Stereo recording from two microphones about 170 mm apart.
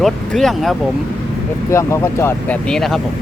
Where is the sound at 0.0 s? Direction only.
Centre (ahead or behind).